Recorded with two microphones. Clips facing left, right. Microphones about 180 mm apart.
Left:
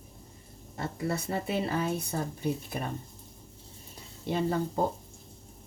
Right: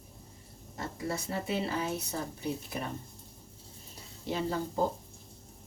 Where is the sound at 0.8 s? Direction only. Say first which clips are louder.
Left 3 dB; 60° left (ahead or behind).